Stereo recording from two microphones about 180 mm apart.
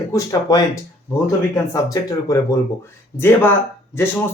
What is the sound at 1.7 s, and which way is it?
Speech, 20° left (ahead or behind).